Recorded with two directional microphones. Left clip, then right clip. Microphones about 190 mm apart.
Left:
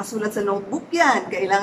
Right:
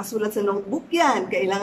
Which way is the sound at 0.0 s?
10° right (ahead or behind).